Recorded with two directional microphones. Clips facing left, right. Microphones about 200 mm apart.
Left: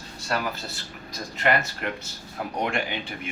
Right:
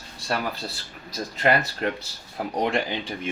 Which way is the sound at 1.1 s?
35° right (ahead or behind).